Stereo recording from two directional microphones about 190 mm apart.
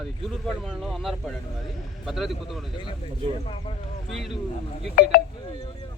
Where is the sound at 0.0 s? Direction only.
Centre (ahead or behind).